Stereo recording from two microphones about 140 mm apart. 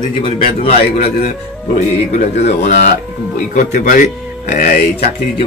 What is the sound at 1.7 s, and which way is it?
Speech, 55° left (ahead or behind).